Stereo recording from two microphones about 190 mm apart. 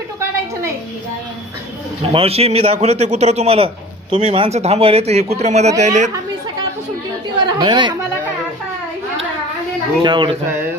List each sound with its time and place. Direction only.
2.1 s a man's voice: 30° right (ahead or behind)
7.4 s speech: 25° right (ahead or behind)
10.0 s speech: 25° right (ahead or behind)